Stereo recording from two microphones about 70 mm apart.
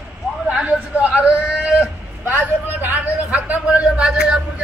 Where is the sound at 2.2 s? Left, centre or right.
Right.